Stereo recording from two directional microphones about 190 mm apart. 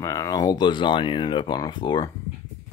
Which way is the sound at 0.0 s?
20° left (ahead or behind).